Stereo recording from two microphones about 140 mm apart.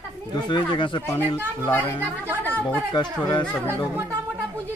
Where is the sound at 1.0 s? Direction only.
15° left (ahead or behind).